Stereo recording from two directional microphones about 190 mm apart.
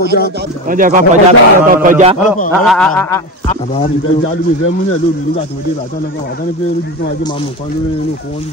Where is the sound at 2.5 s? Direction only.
Centre (ahead or behind).